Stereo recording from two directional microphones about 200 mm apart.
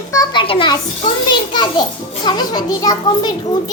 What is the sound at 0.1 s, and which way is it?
A child's voice, 20° left (ahead or behind).